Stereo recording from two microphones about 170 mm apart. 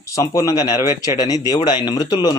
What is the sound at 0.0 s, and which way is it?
A man's voice, 20° left (ahead or behind).